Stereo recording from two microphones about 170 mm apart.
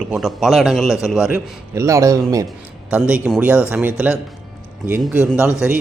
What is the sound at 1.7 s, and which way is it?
Speech, 15° right (ahead or behind).